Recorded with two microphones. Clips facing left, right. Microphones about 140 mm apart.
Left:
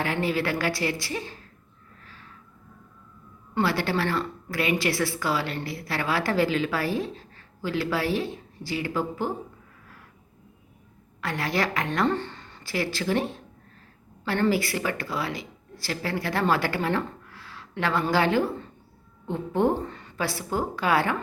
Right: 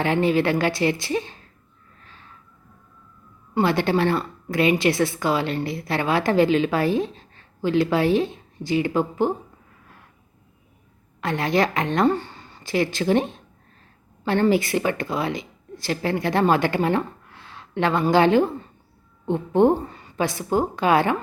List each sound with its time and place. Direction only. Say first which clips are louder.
0.0 s a woman's voice: right 6 dB; 25° right (ahead or behind)
3.5 s a woman's voice: right 5 dB; 20° right (ahead or behind)
11.2 s a woman's voice: right 6 dB; 20° right (ahead or behind)
12.0 s a woman's voice: right 5 dB; 10° right (ahead or behind)